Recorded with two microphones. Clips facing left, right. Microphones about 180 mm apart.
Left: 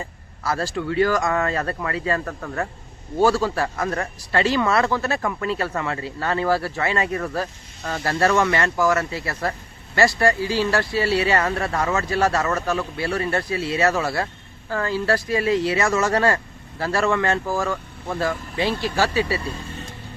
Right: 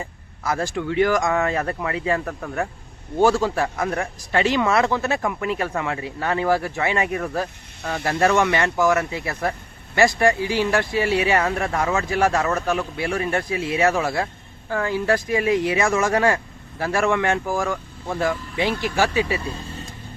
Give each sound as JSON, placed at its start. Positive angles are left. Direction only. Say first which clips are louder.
{"t": 0.0, "sound": "speech", "louder": "even", "side_deg": -15}